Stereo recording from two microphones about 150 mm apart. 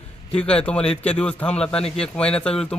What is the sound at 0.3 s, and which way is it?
A man's voice, 10° left (ahead or behind).